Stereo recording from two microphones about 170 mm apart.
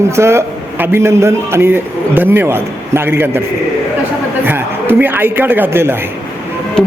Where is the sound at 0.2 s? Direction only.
15° right (ahead or behind).